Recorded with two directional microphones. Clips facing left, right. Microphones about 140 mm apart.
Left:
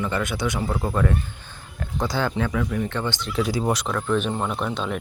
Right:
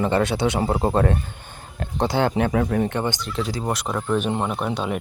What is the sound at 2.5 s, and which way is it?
Speech, 45° right (ahead or behind).